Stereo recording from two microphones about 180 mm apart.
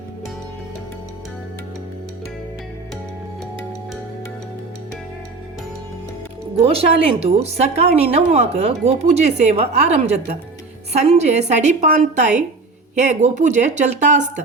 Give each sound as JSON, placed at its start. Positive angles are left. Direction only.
{"t": 6.6, "sound": "a woman's voice", "side_deg": -35}